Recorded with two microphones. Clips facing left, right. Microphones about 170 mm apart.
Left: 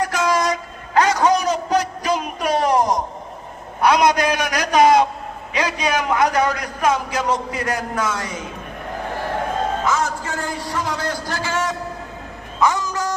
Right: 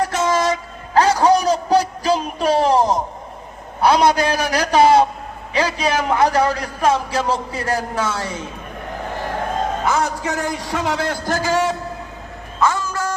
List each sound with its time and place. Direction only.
0.0 s train: 25° right (ahead or behind)
0.9 s a sound: 30° right (ahead or behind)
3.8 s a man's voice: 30° right (ahead or behind)
9.8 s a man's voice: 65° right (ahead or behind); by 11.8 s 30° right (ahead or behind)
12.5 s music: 15° left (ahead or behind)